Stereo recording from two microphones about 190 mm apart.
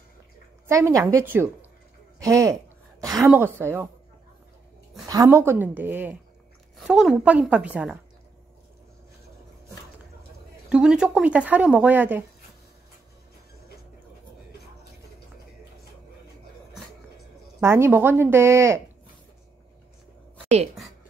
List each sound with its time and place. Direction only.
0.7 s a woman's voice: 15° right (ahead or behind)
5.0 s a woman's voice: 20° right (ahead or behind)
10.7 s a woman's voice: 5° right (ahead or behind)
17.6 s a woman's voice: 15° right (ahead or behind)
20.4 s speech: 35° right (ahead or behind)